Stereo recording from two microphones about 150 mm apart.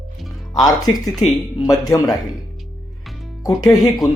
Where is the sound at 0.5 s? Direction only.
25° left (ahead or behind).